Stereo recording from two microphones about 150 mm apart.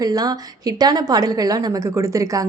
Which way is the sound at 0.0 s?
25° right (ahead or behind).